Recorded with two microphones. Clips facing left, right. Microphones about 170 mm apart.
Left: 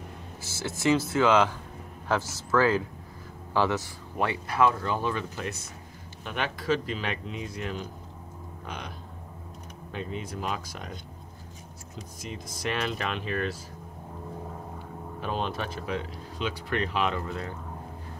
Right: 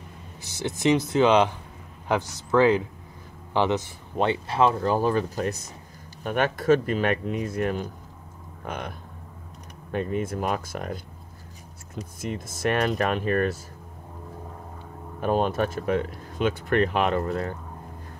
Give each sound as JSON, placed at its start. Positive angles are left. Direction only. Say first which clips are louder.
{"t": 0.4, "sound": "speech", "louder": "right 4 dB", "side_deg": -15}
{"t": 4.8, "sound": "speech", "louder": "right 7 dB", "side_deg": -40}
{"t": 6.2, "sound": "speech", "louder": "right 7 dB", "side_deg": -50}
{"t": 9.9, "sound": "speech", "louder": "right 8 dB", "side_deg": -50}
{"t": 15.1, "sound": "speech", "louder": "right 8 dB", "side_deg": -50}